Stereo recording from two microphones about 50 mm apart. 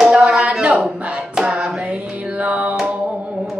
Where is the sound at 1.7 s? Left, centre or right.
Right.